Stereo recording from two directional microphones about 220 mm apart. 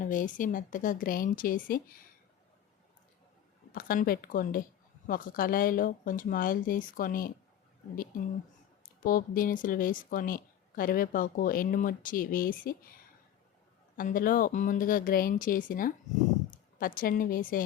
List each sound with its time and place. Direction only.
0.0 s speech: 35° left (ahead or behind)
3.7 s speech: 40° left (ahead or behind)
9.0 s speech: 40° left (ahead or behind)
13.9 s speech: 40° left (ahead or behind)